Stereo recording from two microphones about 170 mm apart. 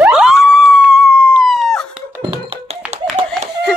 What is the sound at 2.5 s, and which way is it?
Hands, 40° right (ahead or behind).